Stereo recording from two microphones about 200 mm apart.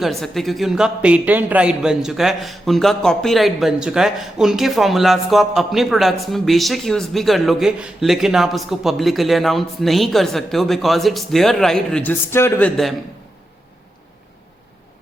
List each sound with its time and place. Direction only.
0.0 s speech: centre (ahead or behind)